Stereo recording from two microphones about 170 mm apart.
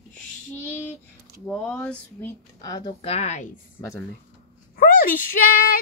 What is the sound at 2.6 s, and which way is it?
Speech, 20° left (ahead or behind).